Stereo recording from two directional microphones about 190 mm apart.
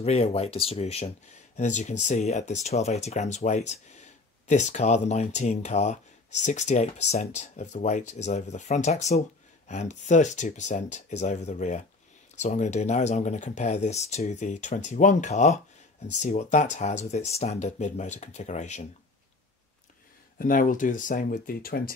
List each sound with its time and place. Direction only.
0.0 s speech: 35° left (ahead or behind)
20.3 s speech: 45° left (ahead or behind)